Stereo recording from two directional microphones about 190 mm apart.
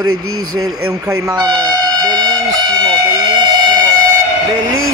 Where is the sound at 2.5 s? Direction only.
20° right (ahead or behind).